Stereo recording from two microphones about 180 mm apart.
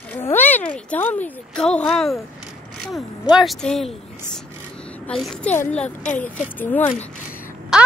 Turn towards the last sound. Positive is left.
turn(degrees=-5)  # may be behind; listen again after turning